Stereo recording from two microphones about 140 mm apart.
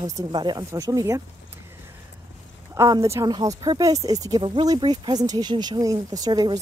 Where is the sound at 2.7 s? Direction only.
25° right (ahead or behind).